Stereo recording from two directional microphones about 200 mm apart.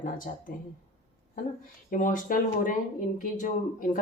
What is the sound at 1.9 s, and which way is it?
A woman's voice, 40° left (ahead or behind).